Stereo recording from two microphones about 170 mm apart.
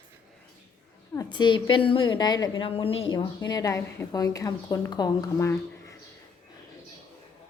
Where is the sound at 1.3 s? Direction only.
30° left (ahead or behind).